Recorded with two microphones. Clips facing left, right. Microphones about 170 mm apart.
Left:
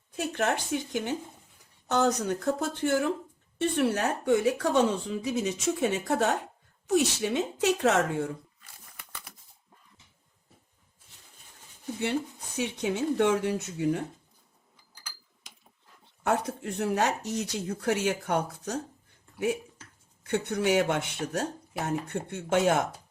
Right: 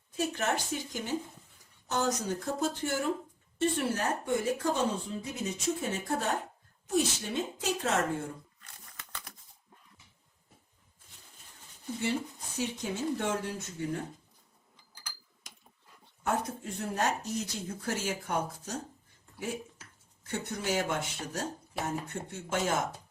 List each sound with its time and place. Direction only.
0.3 s speech: 65° left (ahead or behind)
8.6 s a sound: 10° left (ahead or behind)
12.5 s speech: 70° left (ahead or behind)
16.2 s speech: 70° left (ahead or behind)
20.2 s speech: 65° left (ahead or behind)